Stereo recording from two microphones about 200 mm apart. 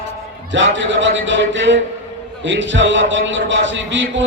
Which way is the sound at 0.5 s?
70° right (ahead or behind).